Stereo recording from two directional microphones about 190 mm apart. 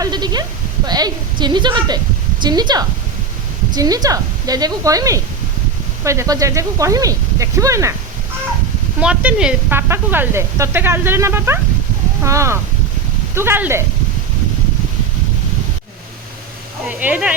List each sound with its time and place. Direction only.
0.0 s a woman's voice: 20° right (ahead or behind)
9.0 s speech: 5° right (ahead or behind)
16.9 s speech: 10° right (ahead or behind)